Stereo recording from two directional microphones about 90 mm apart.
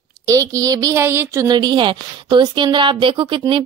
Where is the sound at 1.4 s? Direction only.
50° right (ahead or behind).